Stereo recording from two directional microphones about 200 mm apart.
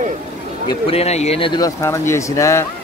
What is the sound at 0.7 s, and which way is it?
Speech, 30° left (ahead or behind).